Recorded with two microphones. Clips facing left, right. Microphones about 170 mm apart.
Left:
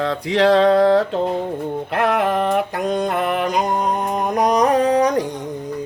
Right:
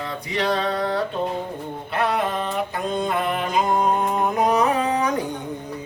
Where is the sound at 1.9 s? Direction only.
90° left; by 3.5 s 60° left (ahead or behind).